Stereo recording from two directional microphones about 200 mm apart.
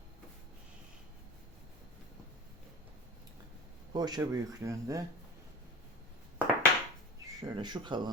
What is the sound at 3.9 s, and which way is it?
Speech, 20° right (ahead or behind).